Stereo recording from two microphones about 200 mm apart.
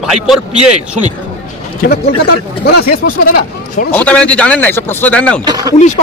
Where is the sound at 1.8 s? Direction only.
50° left (ahead or behind).